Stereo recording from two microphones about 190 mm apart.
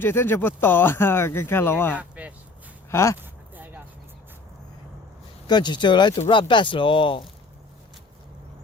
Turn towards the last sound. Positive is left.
turn(degrees=25)  # may be behind; listen again after turning